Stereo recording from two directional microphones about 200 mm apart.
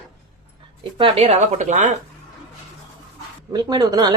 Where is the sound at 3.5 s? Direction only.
20° right (ahead or behind).